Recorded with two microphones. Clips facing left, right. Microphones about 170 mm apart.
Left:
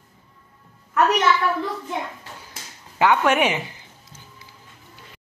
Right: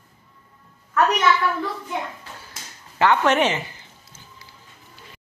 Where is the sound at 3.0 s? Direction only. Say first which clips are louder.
Even; 10° left (ahead or behind).